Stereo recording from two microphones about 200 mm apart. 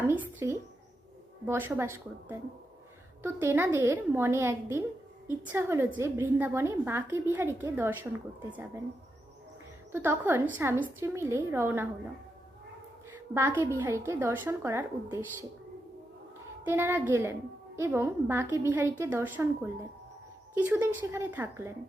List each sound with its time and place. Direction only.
0.1 s a sound: 10° right (ahead or behind)
1.5 s a woman's voice: 10° right (ahead or behind)
9.9 s a woman's voice: 10° right (ahead or behind)
13.3 s a woman's voice: 10° right (ahead or behind)
16.6 s a woman's voice: 10° right (ahead or behind)
20.7 s a woman's voice: 10° right (ahead or behind)